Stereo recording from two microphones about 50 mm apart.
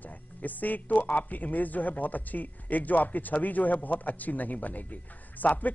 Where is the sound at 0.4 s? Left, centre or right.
Left.